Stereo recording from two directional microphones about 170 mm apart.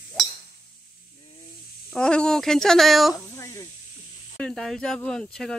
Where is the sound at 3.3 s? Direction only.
20° left (ahead or behind).